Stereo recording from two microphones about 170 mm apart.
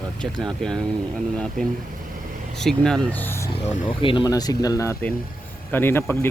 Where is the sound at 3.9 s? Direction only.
30° left (ahead or behind); by 6.3 s 15° left (ahead or behind).